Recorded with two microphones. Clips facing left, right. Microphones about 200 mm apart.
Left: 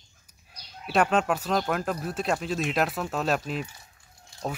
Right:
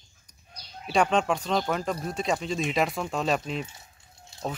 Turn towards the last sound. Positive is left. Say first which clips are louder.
# even
turn(degrees=-25)  # may be behind; listen again after turning